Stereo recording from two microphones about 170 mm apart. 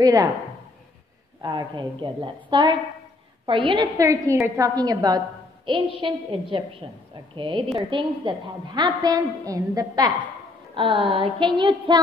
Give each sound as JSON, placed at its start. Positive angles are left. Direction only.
{"t": 0.0, "sound": "a woman's voice", "side_deg": -20}
{"t": 1.4, "sound": "a woman's voice", "side_deg": -25}